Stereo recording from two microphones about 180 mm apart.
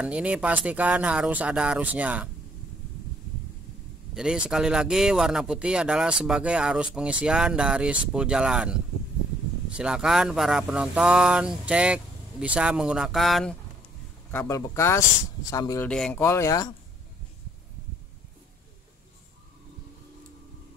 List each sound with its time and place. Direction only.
0.0 s speech: 5° right (ahead or behind)
4.1 s speech: 5° right (ahead or behind)
14.3 s speech: 10° left (ahead or behind)
15.9 s speech: 5° left (ahead or behind)
16.2 s speech: 15° left (ahead or behind)